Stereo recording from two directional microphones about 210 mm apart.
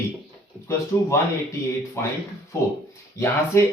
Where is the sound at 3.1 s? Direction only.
15° left (ahead or behind).